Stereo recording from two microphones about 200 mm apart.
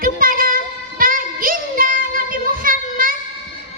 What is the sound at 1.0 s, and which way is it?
Child singing, 45° right (ahead or behind).